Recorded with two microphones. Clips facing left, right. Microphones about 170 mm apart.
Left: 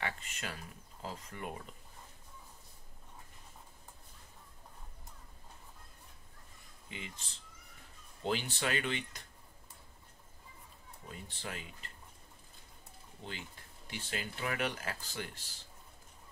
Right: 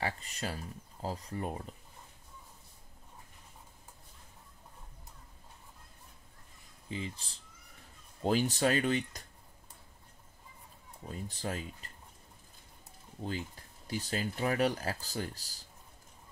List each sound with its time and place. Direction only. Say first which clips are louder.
0.0 s speech: right 4 dB; 35° right (ahead or behind)
6.9 s speech: right 8 dB; 35° right (ahead or behind)
11.1 s speech: right 7 dB; 40° right (ahead or behind)
13.8 s speech: right 6 dB; 40° right (ahead or behind)